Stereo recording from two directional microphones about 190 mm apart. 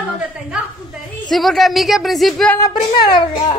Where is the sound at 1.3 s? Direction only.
Centre (ahead or behind).